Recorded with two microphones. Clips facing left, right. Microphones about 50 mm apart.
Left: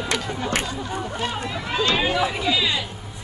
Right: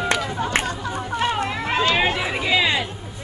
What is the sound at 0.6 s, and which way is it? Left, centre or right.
Chatter, right.